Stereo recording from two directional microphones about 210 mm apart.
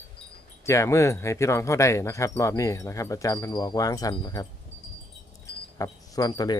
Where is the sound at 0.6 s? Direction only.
15° left (ahead or behind).